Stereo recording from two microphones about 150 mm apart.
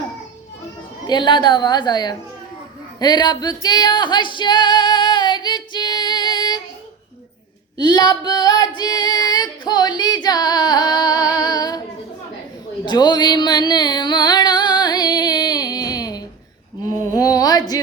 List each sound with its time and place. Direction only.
1.0 s a woman's voice: 30° left (ahead or behind)
3.0 s female singing: 30° left (ahead or behind)
7.8 s female singing: 30° left (ahead or behind)
12.8 s a sound: 30° left (ahead or behind)